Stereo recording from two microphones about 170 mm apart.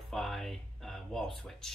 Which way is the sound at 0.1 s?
Centre (ahead or behind).